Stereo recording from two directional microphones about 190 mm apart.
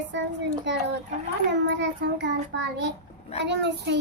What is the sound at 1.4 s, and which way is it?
A child's voice, 65° right (ahead or behind).